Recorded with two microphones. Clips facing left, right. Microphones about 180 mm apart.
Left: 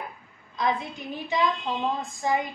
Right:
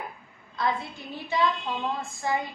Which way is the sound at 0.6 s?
15° left (ahead or behind).